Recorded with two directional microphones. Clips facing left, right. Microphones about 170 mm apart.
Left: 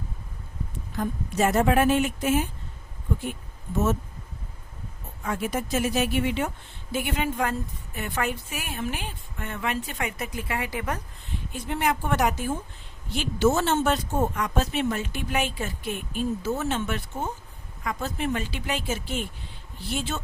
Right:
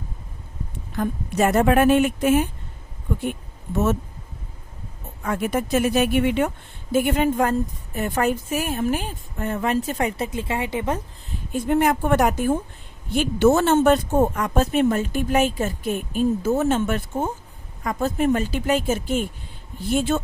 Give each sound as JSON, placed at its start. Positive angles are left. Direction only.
{"t": 0.9, "sound": "a woman's voice", "side_deg": -65}
{"t": 5.2, "sound": "a woman's voice", "side_deg": -60}
{"t": 6.9, "sound": "a woman's voice", "side_deg": -45}
{"t": 11.3, "sound": "speech", "side_deg": -50}